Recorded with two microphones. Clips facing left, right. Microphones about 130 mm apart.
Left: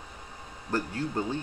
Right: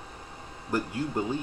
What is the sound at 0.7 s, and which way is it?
Speech, 15° right (ahead or behind).